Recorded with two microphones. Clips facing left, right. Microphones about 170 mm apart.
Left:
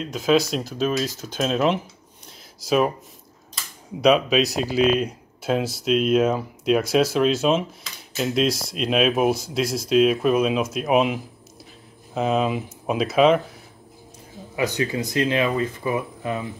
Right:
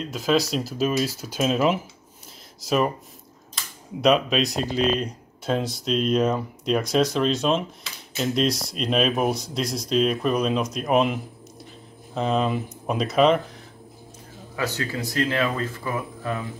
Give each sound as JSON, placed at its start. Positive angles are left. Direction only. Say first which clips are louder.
{"t": 0.0, "sound": "speech", "louder": "left 3 dB", "side_deg": 0}
{"t": 4.0, "sound": "speech", "louder": "left 2 dB", "side_deg": 0}
{"t": 14.5, "sound": "speech", "louder": "left 4 dB", "side_deg": 15}